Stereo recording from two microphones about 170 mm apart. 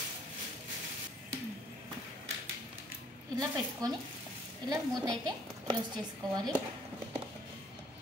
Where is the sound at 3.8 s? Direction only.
25° right (ahead or behind).